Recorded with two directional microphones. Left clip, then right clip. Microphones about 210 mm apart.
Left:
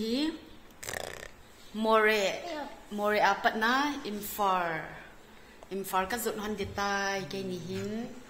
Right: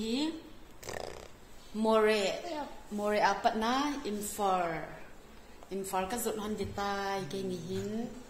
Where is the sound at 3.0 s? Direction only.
5° left (ahead or behind).